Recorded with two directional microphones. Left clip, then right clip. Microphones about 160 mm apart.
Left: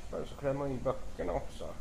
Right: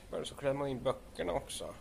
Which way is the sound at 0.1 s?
30° right (ahead or behind).